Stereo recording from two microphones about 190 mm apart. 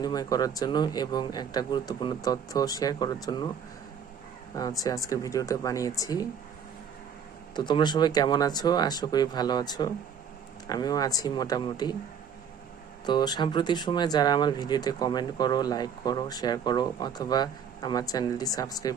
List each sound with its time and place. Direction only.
0.0 s speech: 20° left (ahead or behind)
4.5 s speech: 20° left (ahead or behind)
7.5 s speech: 25° left (ahead or behind)
13.1 s speech: 20° left (ahead or behind)